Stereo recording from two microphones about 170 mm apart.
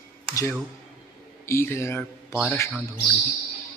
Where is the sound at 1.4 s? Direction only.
15° left (ahead or behind).